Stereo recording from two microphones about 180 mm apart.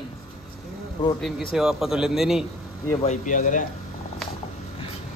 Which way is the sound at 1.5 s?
Centre (ahead or behind).